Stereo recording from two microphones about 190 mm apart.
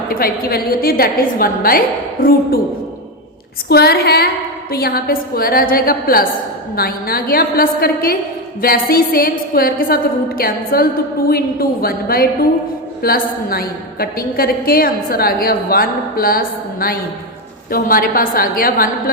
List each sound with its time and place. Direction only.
0.1 s a woman's voice: 50° left (ahead or behind)
3.7 s a woman's voice: 55° left (ahead or behind)